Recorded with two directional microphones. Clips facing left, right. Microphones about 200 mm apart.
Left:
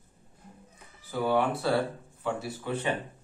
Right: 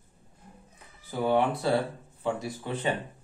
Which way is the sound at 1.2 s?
20° right (ahead or behind).